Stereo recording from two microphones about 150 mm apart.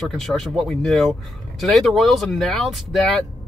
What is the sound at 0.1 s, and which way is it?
Speech, centre (ahead or behind).